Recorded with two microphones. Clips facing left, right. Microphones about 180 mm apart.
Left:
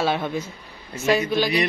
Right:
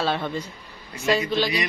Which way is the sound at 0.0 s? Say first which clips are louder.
Left 2 dB; 10° left (ahead or behind).